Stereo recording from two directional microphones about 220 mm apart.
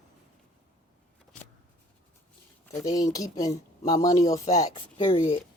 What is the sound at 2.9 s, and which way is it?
Speech, 15° left (ahead or behind).